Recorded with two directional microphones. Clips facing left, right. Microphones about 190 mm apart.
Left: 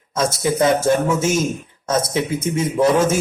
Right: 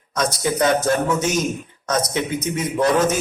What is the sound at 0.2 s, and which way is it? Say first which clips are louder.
Speech: left 2 dB; 25° left (ahead or behind).